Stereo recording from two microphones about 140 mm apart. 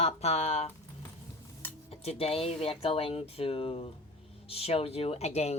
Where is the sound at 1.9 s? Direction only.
45° left (ahead or behind).